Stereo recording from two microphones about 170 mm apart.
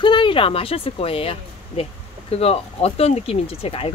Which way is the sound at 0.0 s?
30° left (ahead or behind).